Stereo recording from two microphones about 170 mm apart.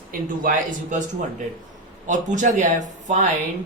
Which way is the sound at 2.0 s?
45° right (ahead or behind).